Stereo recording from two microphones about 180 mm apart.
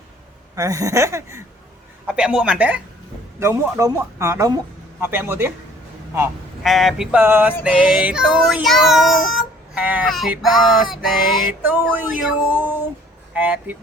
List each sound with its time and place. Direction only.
0.5 s a man's voice: 20° right (ahead or behind)
2.0 s a man's voice: 5° right (ahead or behind)
6.6 s child singing: centre (ahead or behind)
11.6 s a man's voice: 10° right (ahead or behind)